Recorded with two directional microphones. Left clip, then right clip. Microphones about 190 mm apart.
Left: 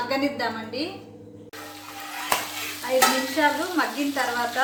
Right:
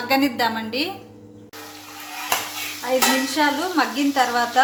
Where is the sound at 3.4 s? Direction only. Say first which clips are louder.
Right 1 dB; 50° right (ahead or behind).